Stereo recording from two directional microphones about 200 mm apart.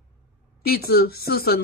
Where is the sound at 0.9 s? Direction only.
50° left (ahead or behind).